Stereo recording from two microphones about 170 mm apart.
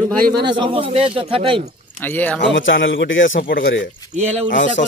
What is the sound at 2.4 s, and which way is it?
A man's voice, 90° left.